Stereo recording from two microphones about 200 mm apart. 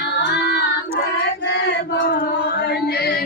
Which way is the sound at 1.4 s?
60° left (ahead or behind).